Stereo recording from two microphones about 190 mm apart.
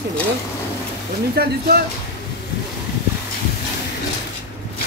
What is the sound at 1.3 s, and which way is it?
Speech, 55° right (ahead or behind).